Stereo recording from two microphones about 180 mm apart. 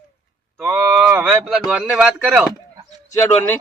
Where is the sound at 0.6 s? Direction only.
10° right (ahead or behind).